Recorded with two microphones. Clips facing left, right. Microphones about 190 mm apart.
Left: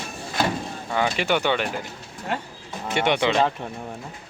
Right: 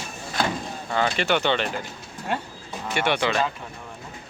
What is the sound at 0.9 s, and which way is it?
Speech, 10° left (ahead or behind).